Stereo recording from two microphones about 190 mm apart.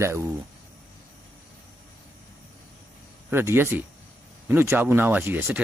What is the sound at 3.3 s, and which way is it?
Speech, 10° right (ahead or behind).